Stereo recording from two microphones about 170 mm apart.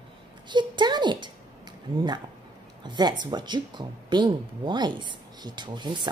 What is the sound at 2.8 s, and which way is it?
Speech, 25° right (ahead or behind).